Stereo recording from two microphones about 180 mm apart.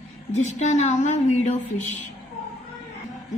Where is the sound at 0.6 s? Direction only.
40° left (ahead or behind).